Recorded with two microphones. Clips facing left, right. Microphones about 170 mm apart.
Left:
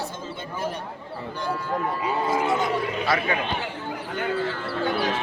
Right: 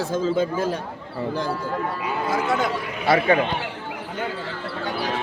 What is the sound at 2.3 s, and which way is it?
Speech, 70° right (ahead or behind).